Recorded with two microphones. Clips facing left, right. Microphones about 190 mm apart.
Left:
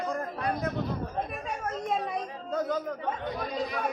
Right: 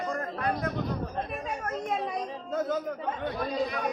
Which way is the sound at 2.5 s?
Centre (ahead or behind).